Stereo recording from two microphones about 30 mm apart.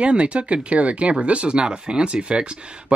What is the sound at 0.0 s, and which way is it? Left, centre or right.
Speech, right.